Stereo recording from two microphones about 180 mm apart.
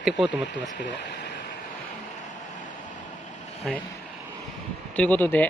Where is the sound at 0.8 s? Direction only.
80° left.